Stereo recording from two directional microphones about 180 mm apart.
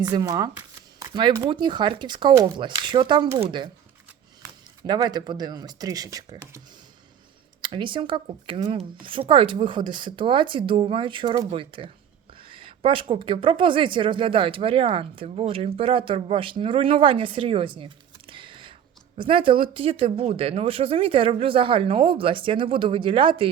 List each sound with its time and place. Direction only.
0.0 s a woman's voice: 20° right (ahead or behind)
4.8 s a woman's voice: 25° right (ahead or behind)
7.6 s a woman's voice: 25° right (ahead or behind)